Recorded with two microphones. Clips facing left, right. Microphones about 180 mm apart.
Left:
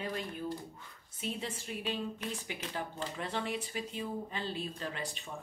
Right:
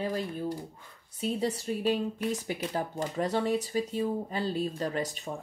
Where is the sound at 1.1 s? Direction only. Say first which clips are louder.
Right 9 dB; 40° right (ahead or behind).